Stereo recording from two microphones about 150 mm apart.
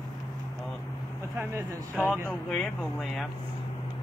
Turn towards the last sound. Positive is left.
turn(degrees=0)  # may be behind; listen again after turning